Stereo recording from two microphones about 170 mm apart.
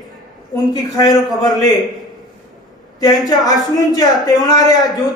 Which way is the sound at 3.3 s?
20° left (ahead or behind).